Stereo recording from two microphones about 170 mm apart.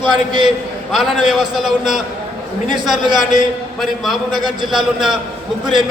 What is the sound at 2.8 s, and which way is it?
A man's voice, centre (ahead or behind).